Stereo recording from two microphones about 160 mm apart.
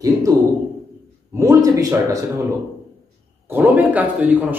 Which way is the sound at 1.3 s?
20° right (ahead or behind).